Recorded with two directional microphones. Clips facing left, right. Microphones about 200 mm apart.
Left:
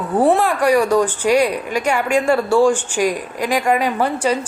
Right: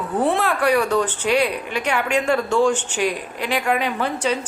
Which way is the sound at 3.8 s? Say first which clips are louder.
Left 4 dB; 10° left (ahead or behind).